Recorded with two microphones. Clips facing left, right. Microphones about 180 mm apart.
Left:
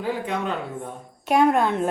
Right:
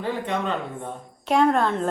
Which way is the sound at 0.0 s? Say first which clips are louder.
Even; 5° left (ahead or behind).